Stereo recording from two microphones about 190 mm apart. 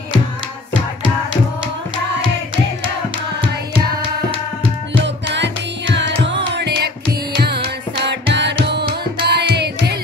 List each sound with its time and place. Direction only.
4.9 s music: 65° right (ahead or behind)